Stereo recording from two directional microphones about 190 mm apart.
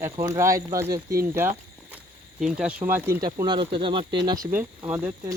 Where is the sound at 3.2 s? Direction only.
25° right (ahead or behind).